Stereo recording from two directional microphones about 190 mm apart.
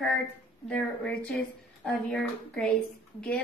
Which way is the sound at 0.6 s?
5° left (ahead or behind).